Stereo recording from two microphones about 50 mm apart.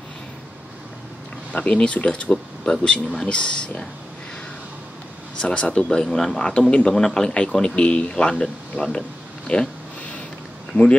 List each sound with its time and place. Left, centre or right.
1.5 s speech: left
5.4 s a man's voice: left; by 6.4 s centre
6.4 s speech: centre
10.7 s speech: centre